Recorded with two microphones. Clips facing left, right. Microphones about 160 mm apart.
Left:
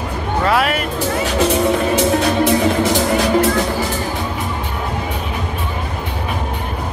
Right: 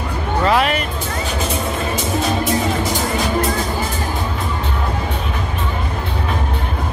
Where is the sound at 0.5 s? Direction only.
5° left (ahead or behind).